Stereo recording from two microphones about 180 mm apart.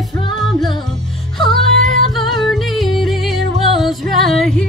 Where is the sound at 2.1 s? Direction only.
Centre (ahead or behind).